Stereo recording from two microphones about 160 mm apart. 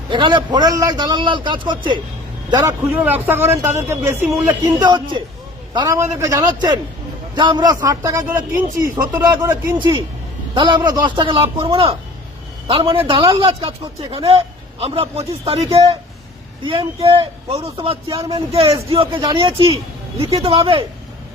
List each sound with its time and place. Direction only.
0.1 s a man's voice: 30° right (ahead or behind)
2.9 s speech: 10° right (ahead or behind)
4.4 s a man's voice: 25° right (ahead or behind)
9.7 s speech: 30° right (ahead or behind)
17.1 s speech: 40° right (ahead or behind)
18.2 s a man's voice: 25° right (ahead or behind)
18.5 s speech: 35° right (ahead or behind)